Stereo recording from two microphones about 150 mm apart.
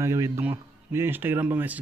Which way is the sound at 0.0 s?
20° right (ahead or behind).